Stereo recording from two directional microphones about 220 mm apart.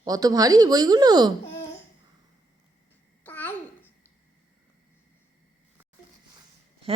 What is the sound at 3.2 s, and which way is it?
Babbling, 10° left (ahead or behind).